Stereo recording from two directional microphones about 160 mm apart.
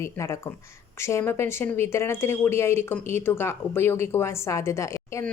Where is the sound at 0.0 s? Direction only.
20° left (ahead or behind).